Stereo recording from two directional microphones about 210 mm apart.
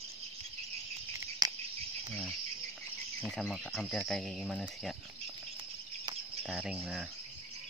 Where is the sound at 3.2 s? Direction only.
Centre (ahead or behind).